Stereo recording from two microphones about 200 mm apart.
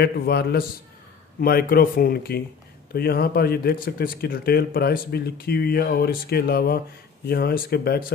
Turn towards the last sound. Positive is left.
turn(degrees=50)  # may be behind; listen again after turning